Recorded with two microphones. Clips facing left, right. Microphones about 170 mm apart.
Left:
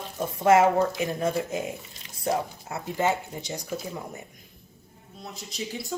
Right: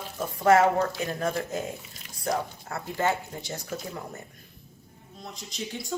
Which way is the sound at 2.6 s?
20° left (ahead or behind).